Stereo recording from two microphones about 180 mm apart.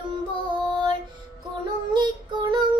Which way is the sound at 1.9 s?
25° right (ahead or behind).